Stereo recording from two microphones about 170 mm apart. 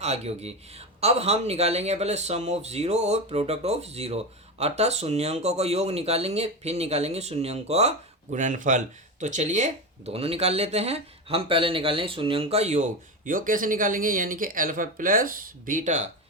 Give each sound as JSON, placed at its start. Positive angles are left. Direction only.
{"t": 0.0, "sound": "speech", "side_deg": -40}